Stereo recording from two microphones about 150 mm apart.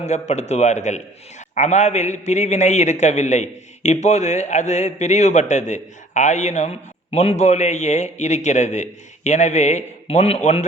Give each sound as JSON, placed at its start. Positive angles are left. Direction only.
{"t": 0.0, "sound": "a man's voice", "side_deg": 50}